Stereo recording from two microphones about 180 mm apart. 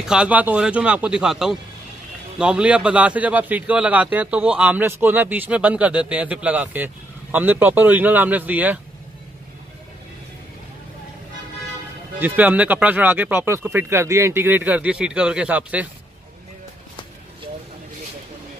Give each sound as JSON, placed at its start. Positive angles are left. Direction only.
{"t": 0.1, "sound": "a man's voice", "side_deg": -5}
{"t": 12.2, "sound": "a man's voice", "side_deg": -10}